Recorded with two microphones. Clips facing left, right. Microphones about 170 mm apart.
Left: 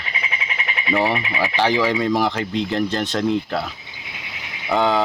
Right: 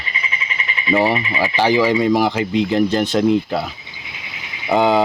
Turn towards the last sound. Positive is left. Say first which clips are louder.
# right 4 dB
turn(degrees=-15)  # may be behind; listen again after turning